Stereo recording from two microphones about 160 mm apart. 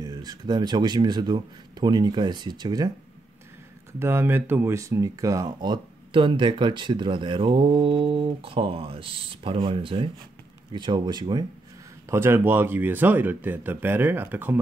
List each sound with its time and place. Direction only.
0.0 s speech: 25° right (ahead or behind)
4.0 s speech: 15° right (ahead or behind)
12.1 s speech: 15° right (ahead or behind)